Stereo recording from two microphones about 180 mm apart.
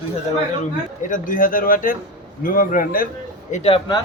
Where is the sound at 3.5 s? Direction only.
35° left (ahead or behind).